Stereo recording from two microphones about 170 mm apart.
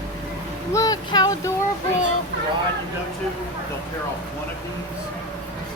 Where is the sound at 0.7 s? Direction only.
20° left (ahead or behind).